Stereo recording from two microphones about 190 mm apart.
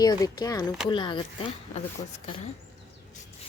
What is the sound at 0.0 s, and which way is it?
Speech, 20° left (ahead or behind).